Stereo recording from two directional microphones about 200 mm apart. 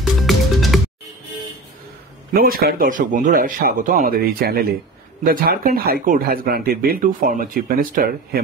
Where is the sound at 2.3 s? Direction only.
45° right (ahead or behind).